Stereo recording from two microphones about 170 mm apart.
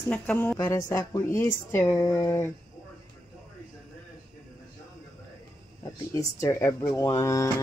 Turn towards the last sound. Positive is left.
turn(degrees=20)  # may be behind; listen again after turning